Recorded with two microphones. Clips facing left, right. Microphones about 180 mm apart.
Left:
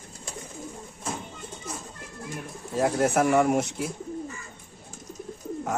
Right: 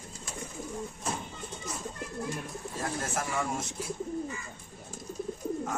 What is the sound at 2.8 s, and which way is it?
Speech, 70° left (ahead or behind).